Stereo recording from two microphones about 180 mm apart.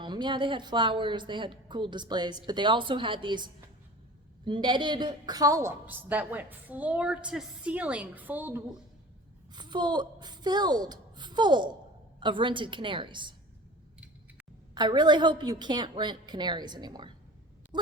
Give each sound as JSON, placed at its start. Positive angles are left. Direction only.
{"t": 0.0, "sound": "a woman's voice", "side_deg": -25}
{"t": 9.5, "sound": "a woman's voice", "side_deg": -25}
{"t": 14.8, "sound": "a woman's voice", "side_deg": -25}